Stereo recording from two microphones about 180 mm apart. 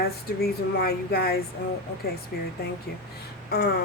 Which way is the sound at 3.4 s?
60° left (ahead or behind).